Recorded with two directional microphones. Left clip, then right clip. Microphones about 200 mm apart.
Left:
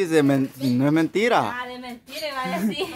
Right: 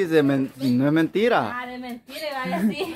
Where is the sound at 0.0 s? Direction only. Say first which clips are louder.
Even; 10° left (ahead or behind).